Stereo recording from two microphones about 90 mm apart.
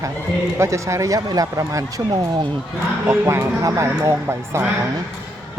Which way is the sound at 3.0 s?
30° right (ahead or behind).